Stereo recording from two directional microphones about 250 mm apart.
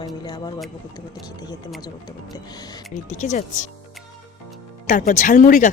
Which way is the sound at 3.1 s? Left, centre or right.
Left.